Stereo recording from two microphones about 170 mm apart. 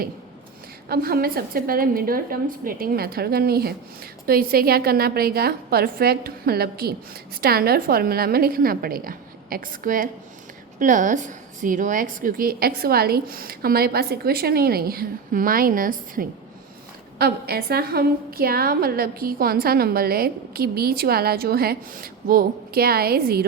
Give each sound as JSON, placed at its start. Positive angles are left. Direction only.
{"t": 0.9, "sound": "a woman's voice", "side_deg": -60}
{"t": 17.2, "sound": "a woman's voice", "side_deg": -65}